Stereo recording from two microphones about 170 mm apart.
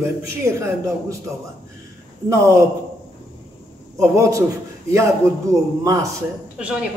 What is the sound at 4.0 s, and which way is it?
Speech, 20° right (ahead or behind).